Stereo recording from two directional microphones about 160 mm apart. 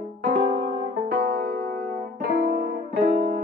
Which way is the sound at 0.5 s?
90° right.